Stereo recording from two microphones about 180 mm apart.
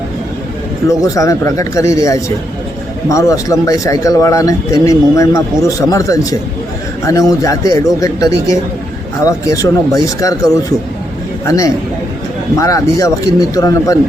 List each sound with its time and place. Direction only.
0.9 s a man's voice: 20° left (ahead or behind)